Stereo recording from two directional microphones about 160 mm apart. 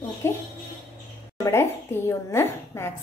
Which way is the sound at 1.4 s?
15° left (ahead or behind).